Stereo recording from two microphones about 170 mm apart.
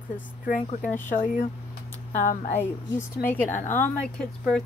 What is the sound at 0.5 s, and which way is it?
Speech, 45° left (ahead or behind).